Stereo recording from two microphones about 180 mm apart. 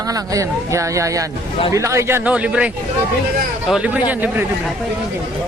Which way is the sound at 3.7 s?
10° right (ahead or behind).